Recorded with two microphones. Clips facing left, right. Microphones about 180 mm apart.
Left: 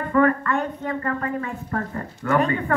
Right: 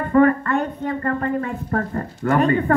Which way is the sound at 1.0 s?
40° right (ahead or behind).